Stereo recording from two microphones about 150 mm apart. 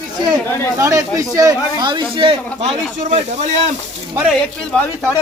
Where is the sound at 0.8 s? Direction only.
20° right (ahead or behind); by 2.7 s 40° right (ahead or behind).